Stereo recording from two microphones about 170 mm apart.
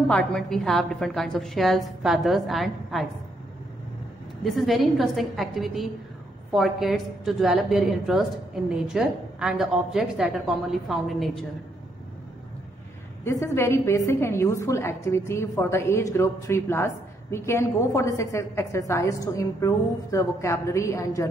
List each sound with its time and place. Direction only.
0.1 s a woman's voice: 5° left (ahead or behind)
4.4 s a woman's voice: centre (ahead or behind)
13.2 s a woman's voice: 15° left (ahead or behind)